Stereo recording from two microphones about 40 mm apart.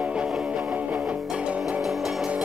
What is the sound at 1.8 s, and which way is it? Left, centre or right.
Music, centre.